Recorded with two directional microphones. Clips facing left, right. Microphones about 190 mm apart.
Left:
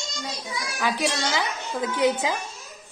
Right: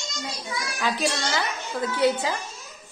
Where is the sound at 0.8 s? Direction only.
15° left (ahead or behind).